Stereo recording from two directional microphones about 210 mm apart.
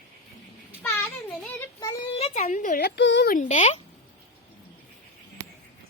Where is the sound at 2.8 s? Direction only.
55° left (ahead or behind).